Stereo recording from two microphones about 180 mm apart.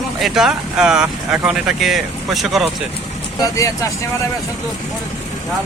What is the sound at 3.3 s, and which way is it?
Speech, 20° left (ahead or behind).